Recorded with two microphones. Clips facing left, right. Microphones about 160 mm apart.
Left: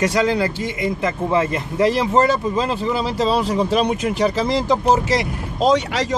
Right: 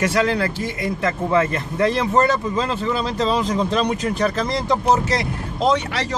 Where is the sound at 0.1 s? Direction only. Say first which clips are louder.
Left 1 dB; 15° left (ahead or behind).